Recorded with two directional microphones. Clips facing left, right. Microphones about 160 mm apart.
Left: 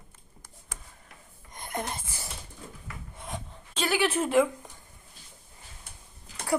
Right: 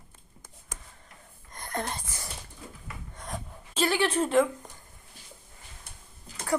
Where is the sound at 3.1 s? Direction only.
Centre (ahead or behind).